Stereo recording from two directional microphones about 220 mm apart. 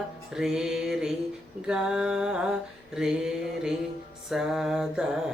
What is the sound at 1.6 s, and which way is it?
Mantra, 5° right (ahead or behind).